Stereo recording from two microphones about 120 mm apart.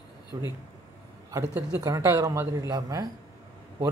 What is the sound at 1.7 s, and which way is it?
Speech, 30° right (ahead or behind).